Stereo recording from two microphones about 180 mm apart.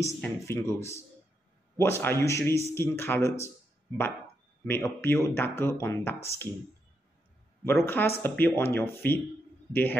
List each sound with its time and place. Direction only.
0.0 s a man's voice: 15° left (ahead or behind)
4.6 s a man's voice: 15° left (ahead or behind)
7.6 s a man's voice: 10° left (ahead or behind)